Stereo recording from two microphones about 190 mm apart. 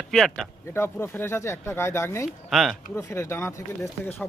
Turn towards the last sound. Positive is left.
turn(degrees=15)  # may be behind; listen again after turning